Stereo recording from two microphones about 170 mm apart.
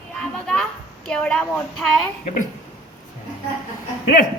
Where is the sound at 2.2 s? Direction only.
50° left (ahead or behind).